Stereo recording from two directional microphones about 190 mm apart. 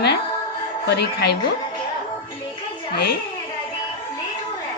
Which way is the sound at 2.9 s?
55° left (ahead or behind).